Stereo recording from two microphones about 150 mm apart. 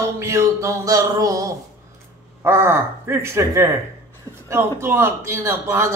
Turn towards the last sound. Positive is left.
turn(degrees=-20)  # may be behind; listen again after turning